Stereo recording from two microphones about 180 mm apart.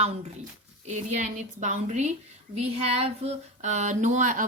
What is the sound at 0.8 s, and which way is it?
Speech, 40° right (ahead or behind).